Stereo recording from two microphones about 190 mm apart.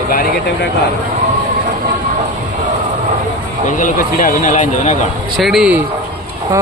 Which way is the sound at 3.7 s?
45° left (ahead or behind).